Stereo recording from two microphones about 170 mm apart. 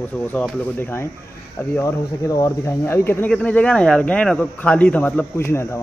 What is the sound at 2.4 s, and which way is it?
Speech, 15° left (ahead or behind).